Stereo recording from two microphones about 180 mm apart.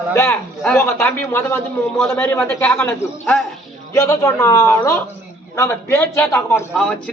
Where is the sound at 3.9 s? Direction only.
20° left (ahead or behind).